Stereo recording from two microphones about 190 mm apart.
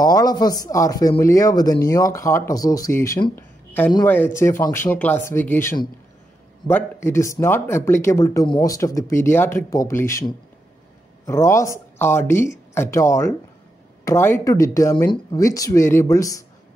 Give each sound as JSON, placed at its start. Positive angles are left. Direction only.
{"t": 0.0, "sound": "speech", "side_deg": 20}